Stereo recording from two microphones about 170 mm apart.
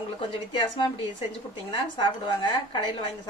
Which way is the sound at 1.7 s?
30° left (ahead or behind).